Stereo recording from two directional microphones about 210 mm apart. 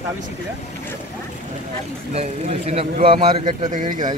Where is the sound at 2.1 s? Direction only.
30° right (ahead or behind).